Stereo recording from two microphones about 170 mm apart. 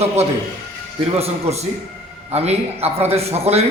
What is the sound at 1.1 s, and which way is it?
A man's voice, 35° right (ahead or behind).